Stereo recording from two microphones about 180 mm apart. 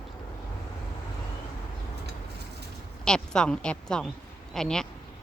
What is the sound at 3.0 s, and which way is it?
A woman's voice, 5° left (ahead or behind).